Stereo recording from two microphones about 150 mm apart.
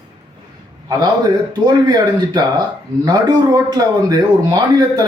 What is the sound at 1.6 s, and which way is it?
Speech, 25° right (ahead or behind).